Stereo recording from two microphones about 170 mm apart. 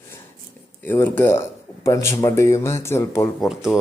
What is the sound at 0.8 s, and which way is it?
Speech, 10° left (ahead or behind).